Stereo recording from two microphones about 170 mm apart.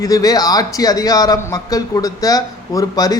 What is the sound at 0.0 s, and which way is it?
A man's voice, 20° left (ahead or behind).